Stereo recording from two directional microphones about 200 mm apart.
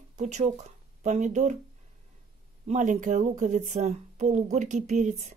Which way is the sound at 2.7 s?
40° right (ahead or behind).